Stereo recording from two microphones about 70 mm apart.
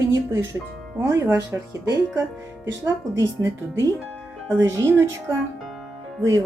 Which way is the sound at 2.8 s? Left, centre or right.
Right.